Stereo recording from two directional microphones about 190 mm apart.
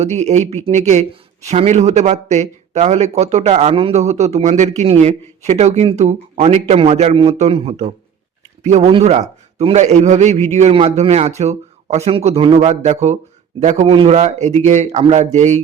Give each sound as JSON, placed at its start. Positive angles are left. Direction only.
{"t": 0.0, "sound": "speech", "side_deg": -35}